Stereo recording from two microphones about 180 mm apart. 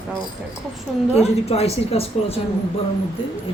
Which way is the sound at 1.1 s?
35° left (ahead or behind).